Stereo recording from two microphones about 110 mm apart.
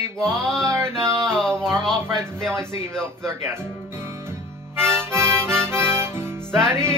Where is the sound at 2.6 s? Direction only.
5° left (ahead or behind).